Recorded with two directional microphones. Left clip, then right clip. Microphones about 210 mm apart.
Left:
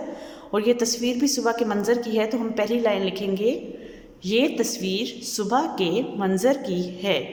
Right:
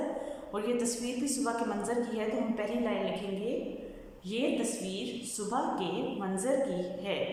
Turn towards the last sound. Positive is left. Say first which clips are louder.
# left 9 dB
turn(degrees=45)  # may be behind; listen again after turning